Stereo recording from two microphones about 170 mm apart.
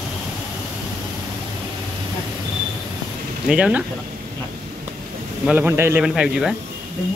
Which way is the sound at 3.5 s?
5° right (ahead or behind).